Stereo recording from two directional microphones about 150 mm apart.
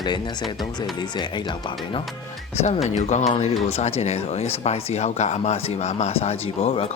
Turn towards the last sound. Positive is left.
turn(degrees=40)  # may be behind; listen again after turning